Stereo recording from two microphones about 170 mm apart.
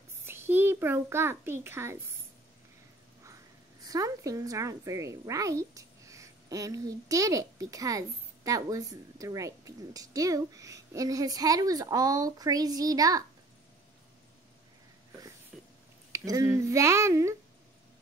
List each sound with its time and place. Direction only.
0.2 s a child's voice: 15° right (ahead or behind)
3.8 s a woman's voice: 20° right (ahead or behind)
15.5 s a sound: centre (ahead or behind)
16.1 s speech: 20° right (ahead or behind)